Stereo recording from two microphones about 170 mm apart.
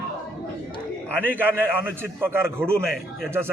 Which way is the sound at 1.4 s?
10° right (ahead or behind).